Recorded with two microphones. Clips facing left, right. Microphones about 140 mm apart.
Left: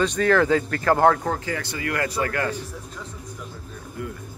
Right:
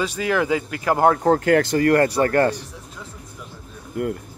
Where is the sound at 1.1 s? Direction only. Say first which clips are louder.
Right 11 dB; 35° right (ahead or behind).